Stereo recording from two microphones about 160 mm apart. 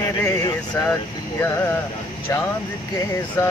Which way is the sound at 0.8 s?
20° left (ahead or behind).